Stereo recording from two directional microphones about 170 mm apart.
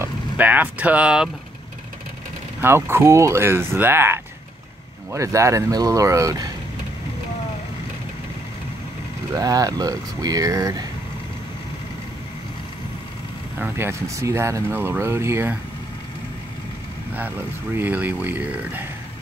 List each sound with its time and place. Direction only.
0.0 s speech: 10° right (ahead or behind)
2.6 s speech: 15° right (ahead or behind)
9.3 s speech: 20° right (ahead or behind)
13.6 s speech: 15° right (ahead or behind)
17.7 s speech: 10° right (ahead or behind)